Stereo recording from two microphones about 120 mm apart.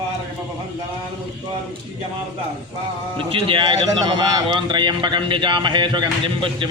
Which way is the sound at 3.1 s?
45° right (ahead or behind).